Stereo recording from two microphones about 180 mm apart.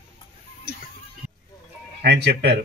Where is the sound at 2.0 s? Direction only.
65° right (ahead or behind).